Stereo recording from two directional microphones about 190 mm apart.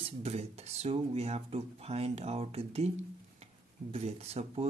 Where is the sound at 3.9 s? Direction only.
35° right (ahead or behind).